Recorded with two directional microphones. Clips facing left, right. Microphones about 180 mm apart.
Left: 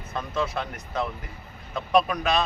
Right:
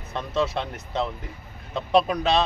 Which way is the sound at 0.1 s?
25° right (ahead or behind).